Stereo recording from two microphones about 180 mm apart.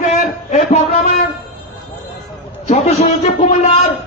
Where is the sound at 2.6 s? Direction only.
40° left (ahead or behind).